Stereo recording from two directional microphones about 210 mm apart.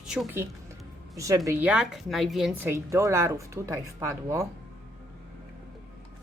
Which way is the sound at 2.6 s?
15° right (ahead or behind).